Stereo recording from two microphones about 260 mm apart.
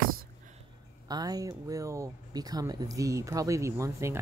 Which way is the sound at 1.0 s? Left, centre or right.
Centre.